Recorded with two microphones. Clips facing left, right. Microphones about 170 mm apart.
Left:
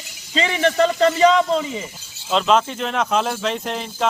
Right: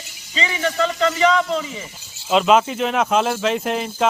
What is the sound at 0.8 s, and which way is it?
Speech, 35° left (ahead or behind).